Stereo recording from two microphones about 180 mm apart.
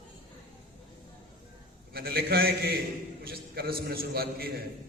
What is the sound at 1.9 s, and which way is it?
A man's voice, 60° right (ahead or behind).